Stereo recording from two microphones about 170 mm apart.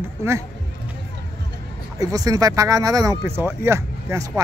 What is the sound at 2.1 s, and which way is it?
Speech, 20° right (ahead or behind).